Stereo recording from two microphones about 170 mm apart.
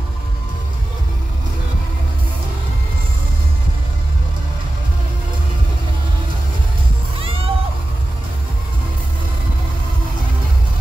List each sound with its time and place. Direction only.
7.2 s music: 35° right (ahead or behind)